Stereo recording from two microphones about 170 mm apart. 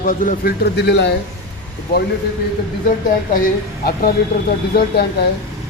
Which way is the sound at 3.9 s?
65° left (ahead or behind).